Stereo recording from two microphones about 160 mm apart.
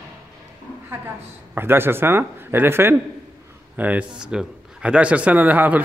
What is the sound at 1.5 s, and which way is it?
A man's voice, 15° right (ahead or behind).